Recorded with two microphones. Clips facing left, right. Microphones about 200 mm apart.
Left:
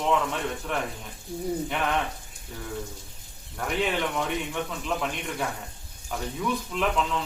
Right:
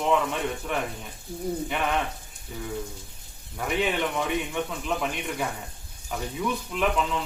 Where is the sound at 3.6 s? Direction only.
5° right (ahead or behind).